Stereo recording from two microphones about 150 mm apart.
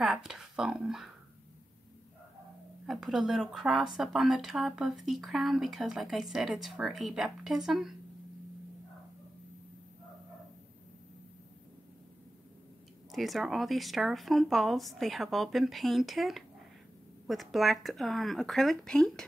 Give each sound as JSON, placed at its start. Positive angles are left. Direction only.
{"t": 0.0, "sound": "speech", "side_deg": -5}
{"t": 2.9, "sound": "speech", "side_deg": -5}
{"t": 13.1, "sound": "speech", "side_deg": 0}